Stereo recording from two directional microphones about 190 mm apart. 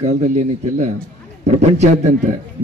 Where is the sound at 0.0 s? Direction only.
35° right (ahead or behind).